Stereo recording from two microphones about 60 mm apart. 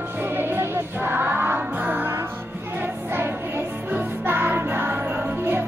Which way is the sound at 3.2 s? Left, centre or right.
Right.